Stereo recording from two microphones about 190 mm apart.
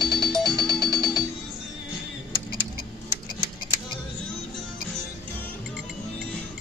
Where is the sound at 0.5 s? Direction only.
20° right (ahead or behind).